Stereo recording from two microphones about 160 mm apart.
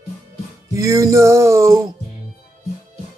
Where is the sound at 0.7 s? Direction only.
20° right (ahead or behind).